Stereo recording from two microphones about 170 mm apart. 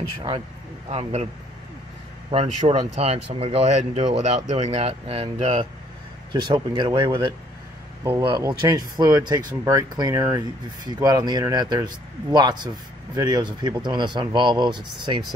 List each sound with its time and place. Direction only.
0.8 s speech: 35° right (ahead or behind)
2.3 s speech: 40° right (ahead or behind)